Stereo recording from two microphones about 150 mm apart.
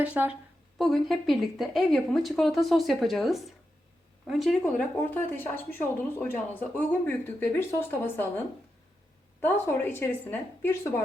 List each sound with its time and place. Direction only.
0.0 s a woman's voice: 10° right (ahead or behind)
4.6 s a woman's voice: 15° left (ahead or behind)
9.4 s a woman's voice: 15° left (ahead or behind)